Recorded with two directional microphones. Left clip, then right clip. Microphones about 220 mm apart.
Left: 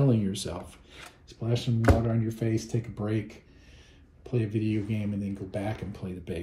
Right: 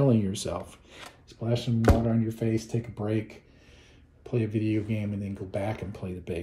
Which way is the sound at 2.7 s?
20° right (ahead or behind).